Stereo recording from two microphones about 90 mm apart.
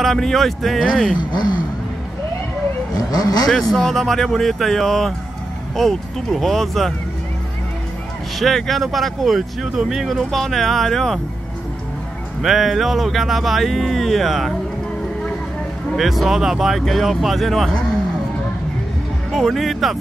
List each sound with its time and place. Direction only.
0.0 s speech: 5° left (ahead or behind)
1.1 s speech: 55° left (ahead or behind)
3.1 s speech: 45° left (ahead or behind)
3.4 s speech: 5° left (ahead or behind)
8.4 s speech: centre (ahead or behind)
12.4 s speech: centre (ahead or behind)
16.0 s speech: centre (ahead or behind)
19.3 s speech: centre (ahead or behind)